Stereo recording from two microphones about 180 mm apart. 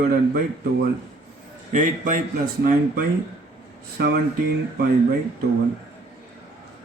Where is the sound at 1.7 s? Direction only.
45° right (ahead or behind).